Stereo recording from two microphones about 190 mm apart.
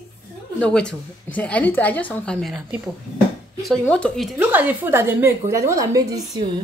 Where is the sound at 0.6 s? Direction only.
5° left (ahead or behind).